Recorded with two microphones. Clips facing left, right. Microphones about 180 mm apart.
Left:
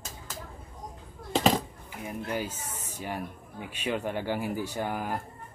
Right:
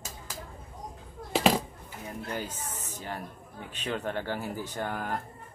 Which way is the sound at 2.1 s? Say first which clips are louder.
Left 3 dB; 10° left (ahead or behind).